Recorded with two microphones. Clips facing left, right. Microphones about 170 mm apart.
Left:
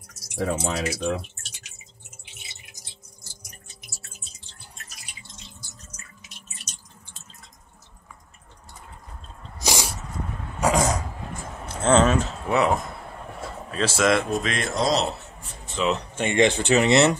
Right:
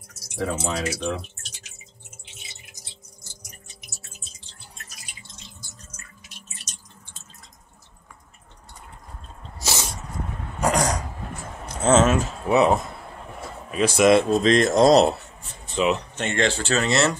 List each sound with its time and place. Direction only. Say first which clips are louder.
0.6 s speech: even; centre (ahead or behind)
9.6 s dog: left 2 dB; 15° left (ahead or behind)
10.6 s throat clearing: left 1 dB; 5° left (ahead or behind)
11.6 s speech: right 1 dB; 10° right (ahead or behind)
12.4 s speech: right 4 dB; 20° right (ahead or behind)
14.4 s speech: right 9 dB; 40° right (ahead or behind)
15.7 s speech: right 2 dB; 15° right (ahead or behind)
16.2 s speech: left 3 dB; 15° left (ahead or behind)